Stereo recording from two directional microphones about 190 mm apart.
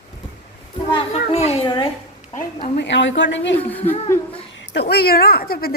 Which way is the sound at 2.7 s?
70° left (ahead or behind).